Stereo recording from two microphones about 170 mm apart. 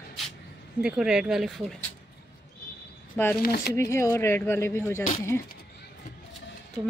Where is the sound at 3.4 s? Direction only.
70° left (ahead or behind).